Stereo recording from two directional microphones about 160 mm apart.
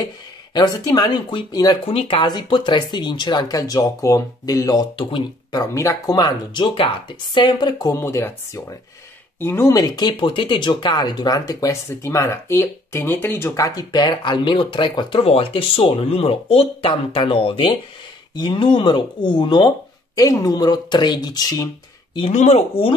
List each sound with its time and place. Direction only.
0.6 s speech: 25° left (ahead or behind)
1.9 s speech: 35° left (ahead or behind)
7.9 s speech: 20° left (ahead or behind)
22.3 s speech: 45° left (ahead or behind)